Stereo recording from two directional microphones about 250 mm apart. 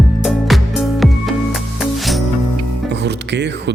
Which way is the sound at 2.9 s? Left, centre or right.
Right.